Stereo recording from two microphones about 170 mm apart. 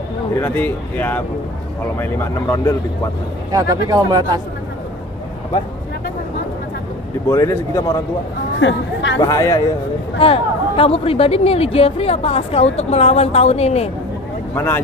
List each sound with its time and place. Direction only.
0.4 s speech: 10° left (ahead or behind)
3.5 s speech: 20° right (ahead or behind)
7.2 s speech: 20° left (ahead or behind)
8.5 s speech: 90° left
9.2 s speech: 20° left (ahead or behind)
10.1 s a woman's voice: 35° left (ahead or behind)
14.5 s speech: 15° left (ahead or behind)